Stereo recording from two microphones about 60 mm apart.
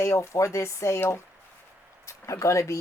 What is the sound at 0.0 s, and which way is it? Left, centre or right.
Speech, left.